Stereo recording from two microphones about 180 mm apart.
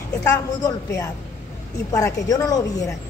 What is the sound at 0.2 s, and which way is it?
A woman's voice, 15° left (ahead or behind).